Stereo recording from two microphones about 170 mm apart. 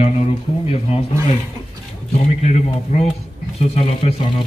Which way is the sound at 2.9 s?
40° left (ahead or behind).